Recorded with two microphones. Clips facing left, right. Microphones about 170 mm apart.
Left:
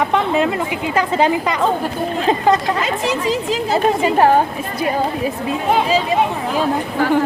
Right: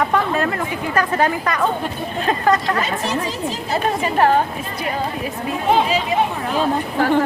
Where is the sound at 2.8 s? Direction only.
90° left.